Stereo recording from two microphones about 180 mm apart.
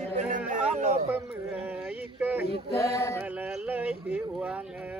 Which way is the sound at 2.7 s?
15° left (ahead or behind).